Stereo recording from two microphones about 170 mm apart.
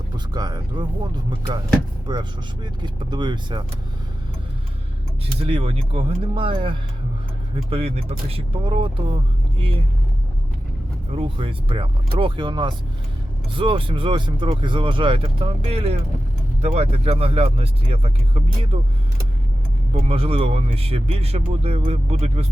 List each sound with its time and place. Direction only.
0.3 s speech: 25° right (ahead or behind)
5.4 s speech: 35° right (ahead or behind)
11.1 s speech: 35° right (ahead or behind)
19.9 s speech: 35° right (ahead or behind)